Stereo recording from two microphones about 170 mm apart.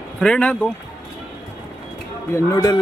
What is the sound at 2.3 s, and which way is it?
Speech, 20° left (ahead or behind).